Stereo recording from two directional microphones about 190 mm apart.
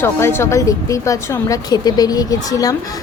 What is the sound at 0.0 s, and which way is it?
Speech, 10° left (ahead or behind).